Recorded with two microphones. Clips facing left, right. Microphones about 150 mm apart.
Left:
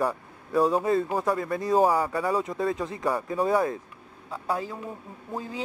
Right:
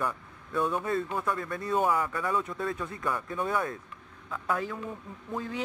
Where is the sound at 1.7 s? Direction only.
35° left (ahead or behind).